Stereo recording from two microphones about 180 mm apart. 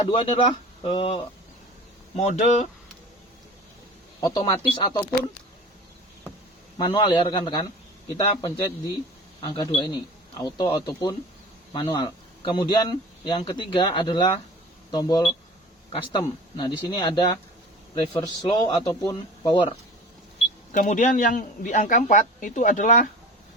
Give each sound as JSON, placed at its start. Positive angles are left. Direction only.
{"t": 0.1, "sound": "speech", "side_deg": 30}
{"t": 4.4, "sound": "speech", "side_deg": 30}
{"t": 6.7, "sound": "speech", "side_deg": 25}
{"t": 16.6, "sound": "speech", "side_deg": 25}
{"t": 20.7, "sound": "a man's voice", "side_deg": 45}